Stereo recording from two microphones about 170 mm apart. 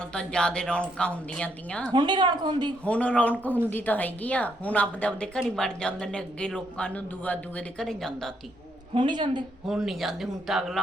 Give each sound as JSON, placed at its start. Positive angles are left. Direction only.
{"t": 0.1, "sound": "speech", "side_deg": 5}
{"t": 1.9, "sound": "a woman's voice", "side_deg": -25}
{"t": 2.8, "sound": "a woman's voice", "side_deg": 5}
{"t": 9.0, "sound": "a woman's voice", "side_deg": -25}
{"t": 9.6, "sound": "speech", "side_deg": 0}